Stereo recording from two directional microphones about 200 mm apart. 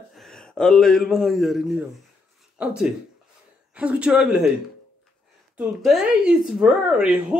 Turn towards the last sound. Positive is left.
turn(degrees=-5)  # may be behind; listen again after turning